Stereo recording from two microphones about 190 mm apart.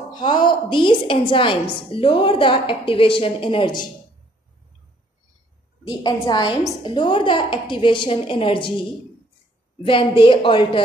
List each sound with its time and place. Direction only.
0.2 s a woman's voice: 25° left (ahead or behind)
5.9 s a woman's voice: 20° left (ahead or behind)
9.8 s a woman's voice: 25° left (ahead or behind)